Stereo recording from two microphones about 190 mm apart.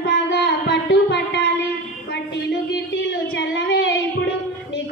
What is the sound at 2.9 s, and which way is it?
Child singing, 65° left (ahead or behind).